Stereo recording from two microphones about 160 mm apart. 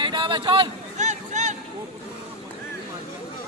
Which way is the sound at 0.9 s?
50° right (ahead or behind).